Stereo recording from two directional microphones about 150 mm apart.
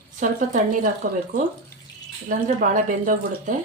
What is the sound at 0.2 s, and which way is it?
Speech, 60° right (ahead or behind).